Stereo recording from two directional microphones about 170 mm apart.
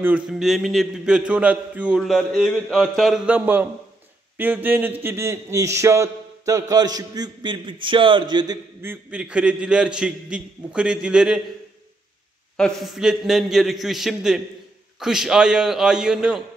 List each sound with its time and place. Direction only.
0.0 s a man's voice: 5° right (ahead or behind); by 8.5 s 25° right (ahead or behind)
8.8 s a man's voice: 10° right (ahead or behind)
12.5 s a man's voice: centre (ahead or behind)